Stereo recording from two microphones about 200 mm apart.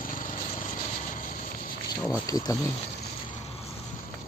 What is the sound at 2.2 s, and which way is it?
Speech, 20° left (ahead or behind).